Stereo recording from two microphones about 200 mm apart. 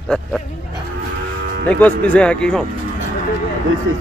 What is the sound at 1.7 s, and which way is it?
Speech, 5° left (ahead or behind).